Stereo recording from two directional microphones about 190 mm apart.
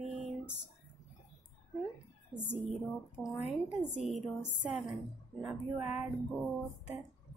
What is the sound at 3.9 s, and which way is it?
Speech, 35° right (ahead or behind).